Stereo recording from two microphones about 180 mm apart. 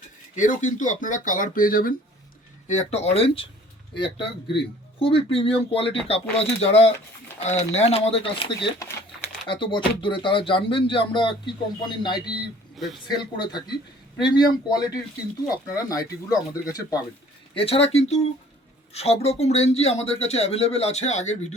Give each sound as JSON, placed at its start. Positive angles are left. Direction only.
{"t": 0.3, "sound": "speech", "side_deg": 45}
{"t": 2.6, "sound": "speech", "side_deg": 40}
{"t": 12.7, "sound": "a man's voice", "side_deg": 0}
{"t": 13.1, "sound": "speech", "side_deg": 25}
{"t": 17.5, "sound": "speech", "side_deg": 30}